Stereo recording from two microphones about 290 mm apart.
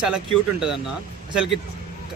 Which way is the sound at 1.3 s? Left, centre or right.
Centre.